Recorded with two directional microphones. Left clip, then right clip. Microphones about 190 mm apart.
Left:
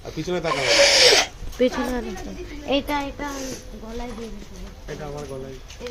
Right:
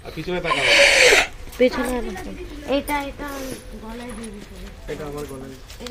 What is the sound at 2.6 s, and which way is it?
Speech, 10° left (ahead or behind).